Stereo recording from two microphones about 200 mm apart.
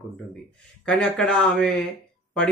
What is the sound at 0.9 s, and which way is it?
Speech, 5° left (ahead or behind).